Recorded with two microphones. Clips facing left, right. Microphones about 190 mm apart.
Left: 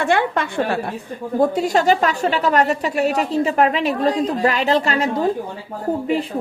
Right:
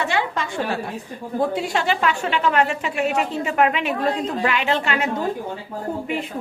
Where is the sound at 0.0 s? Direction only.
55° left (ahead or behind).